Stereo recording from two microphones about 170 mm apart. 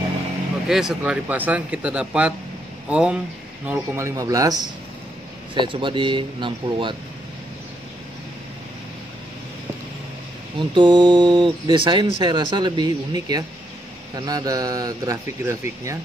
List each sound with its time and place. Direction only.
0.7 s speech: 5° right (ahead or behind); by 7.0 s 30° right (ahead or behind)
10.7 s speech: 25° right (ahead or behind)